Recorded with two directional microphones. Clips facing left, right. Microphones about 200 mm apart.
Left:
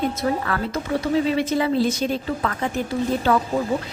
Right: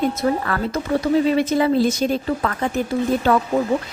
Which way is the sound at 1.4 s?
45° right (ahead or behind).